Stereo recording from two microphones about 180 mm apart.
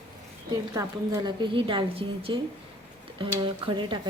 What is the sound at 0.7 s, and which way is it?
A woman's voice, 20° right (ahead or behind).